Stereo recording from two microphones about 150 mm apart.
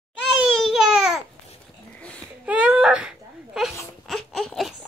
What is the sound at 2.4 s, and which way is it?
Baby cry, 10° right (ahead or behind).